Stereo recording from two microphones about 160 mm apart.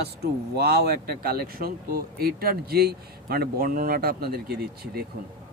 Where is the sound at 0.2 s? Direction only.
80° right.